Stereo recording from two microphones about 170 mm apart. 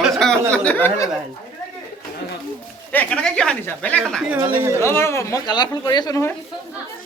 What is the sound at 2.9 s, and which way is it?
Speech, 10° left (ahead or behind).